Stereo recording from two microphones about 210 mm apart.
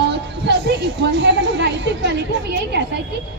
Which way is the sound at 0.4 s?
55° right (ahead or behind).